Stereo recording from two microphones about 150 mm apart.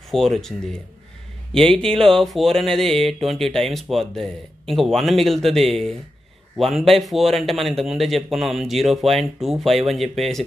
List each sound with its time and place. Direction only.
0.1 s speech: centre (ahead or behind)